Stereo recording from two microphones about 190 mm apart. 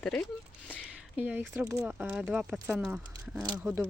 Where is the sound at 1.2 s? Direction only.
10° right (ahead or behind).